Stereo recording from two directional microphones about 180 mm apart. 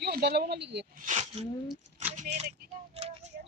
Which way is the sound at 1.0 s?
40° right (ahead or behind).